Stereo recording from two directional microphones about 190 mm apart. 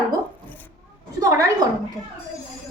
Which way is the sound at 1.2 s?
20° right (ahead or behind).